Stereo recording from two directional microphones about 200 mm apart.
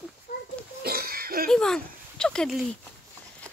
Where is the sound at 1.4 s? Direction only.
5° left (ahead or behind).